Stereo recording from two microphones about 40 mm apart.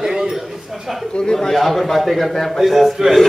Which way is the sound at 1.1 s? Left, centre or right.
Centre.